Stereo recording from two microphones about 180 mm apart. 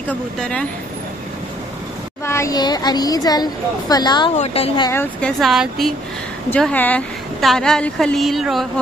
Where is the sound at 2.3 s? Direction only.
15° left (ahead or behind).